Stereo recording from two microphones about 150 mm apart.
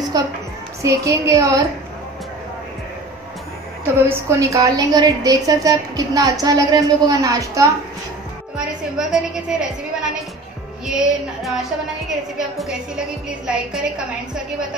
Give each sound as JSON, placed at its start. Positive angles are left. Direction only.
{"t": 0.1, "sound": "a woman's voice", "side_deg": -25}
{"t": 3.8, "sound": "a woman's voice", "side_deg": -15}
{"t": 8.9, "sound": "a woman's voice", "side_deg": -5}